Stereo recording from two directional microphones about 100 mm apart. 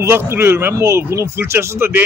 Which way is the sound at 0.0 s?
25° right (ahead or behind).